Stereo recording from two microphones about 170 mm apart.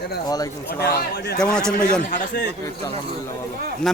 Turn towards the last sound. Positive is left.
turn(degrees=0)  # may be behind; listen again after turning